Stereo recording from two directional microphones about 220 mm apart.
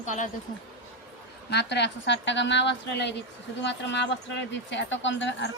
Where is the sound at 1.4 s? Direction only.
50° left (ahead or behind).